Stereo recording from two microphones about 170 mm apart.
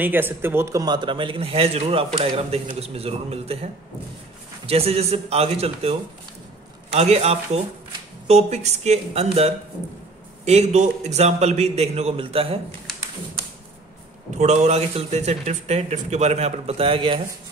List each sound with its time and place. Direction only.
0.0 s a man's voice: 10° right (ahead or behind); by 12.5 s 35° right (ahead or behind)
14.4 s a man's voice: 40° right (ahead or behind)